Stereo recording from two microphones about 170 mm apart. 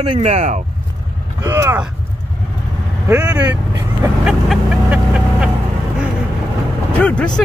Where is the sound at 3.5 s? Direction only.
20° right (ahead or behind).